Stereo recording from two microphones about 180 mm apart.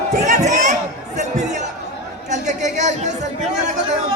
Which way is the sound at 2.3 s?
40° right (ahead or behind).